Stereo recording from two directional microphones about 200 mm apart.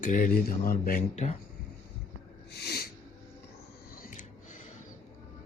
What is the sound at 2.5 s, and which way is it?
Sneeze, 55° left (ahead or behind).